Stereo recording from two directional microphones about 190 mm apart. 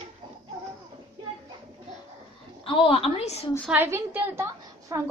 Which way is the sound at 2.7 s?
30° left (ahead or behind).